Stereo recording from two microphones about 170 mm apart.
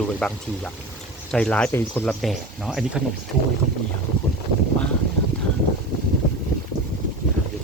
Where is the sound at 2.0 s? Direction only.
Centre (ahead or behind).